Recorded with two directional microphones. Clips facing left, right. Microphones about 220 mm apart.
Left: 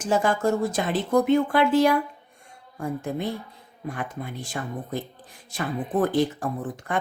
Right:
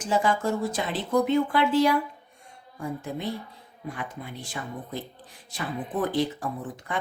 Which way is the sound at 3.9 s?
50° left (ahead or behind).